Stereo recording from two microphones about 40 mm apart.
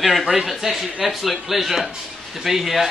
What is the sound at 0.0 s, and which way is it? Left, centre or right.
Speech, centre.